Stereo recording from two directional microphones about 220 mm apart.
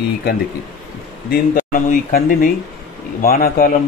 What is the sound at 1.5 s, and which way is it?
Speech, 35° left (ahead or behind).